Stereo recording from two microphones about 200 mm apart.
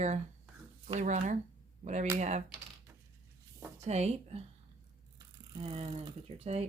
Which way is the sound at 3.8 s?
35° right (ahead or behind).